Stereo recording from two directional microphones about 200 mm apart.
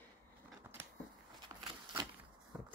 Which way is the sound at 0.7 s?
10° right (ahead or behind).